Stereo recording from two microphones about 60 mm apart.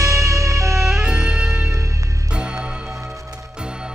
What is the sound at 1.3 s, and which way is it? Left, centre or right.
Music, right.